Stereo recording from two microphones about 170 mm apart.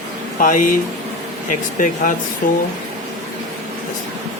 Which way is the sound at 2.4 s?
50° left (ahead or behind).